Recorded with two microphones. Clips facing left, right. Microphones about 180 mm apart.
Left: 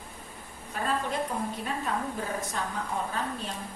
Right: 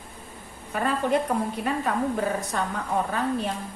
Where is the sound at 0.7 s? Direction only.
65° right (ahead or behind).